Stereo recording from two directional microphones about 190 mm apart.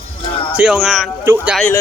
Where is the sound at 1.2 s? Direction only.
15° right (ahead or behind).